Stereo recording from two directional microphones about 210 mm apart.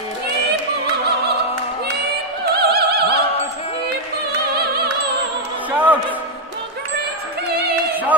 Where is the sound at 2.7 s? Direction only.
50° right (ahead or behind).